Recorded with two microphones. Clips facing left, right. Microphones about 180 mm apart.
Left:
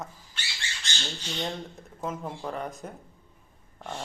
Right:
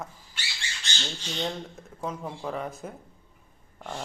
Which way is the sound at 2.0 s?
Centre (ahead or behind).